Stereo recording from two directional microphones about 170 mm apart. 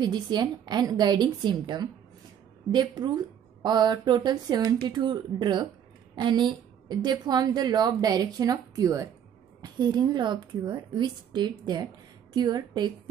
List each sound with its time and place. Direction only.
0.0 s a woman's voice: 25° right (ahead or behind)